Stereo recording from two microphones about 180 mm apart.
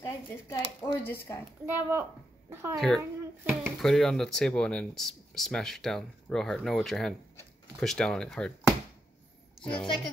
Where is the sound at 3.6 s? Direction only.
Centre (ahead or behind).